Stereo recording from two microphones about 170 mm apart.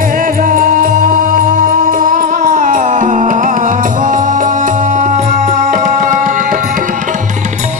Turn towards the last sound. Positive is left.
turn(degrees=-50)  # may be behind; listen again after turning